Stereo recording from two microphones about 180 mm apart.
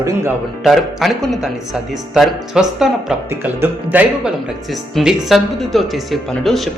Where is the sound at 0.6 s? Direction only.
Centre (ahead or behind).